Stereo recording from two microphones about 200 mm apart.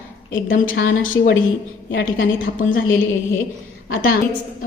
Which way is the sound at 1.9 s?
60° left (ahead or behind).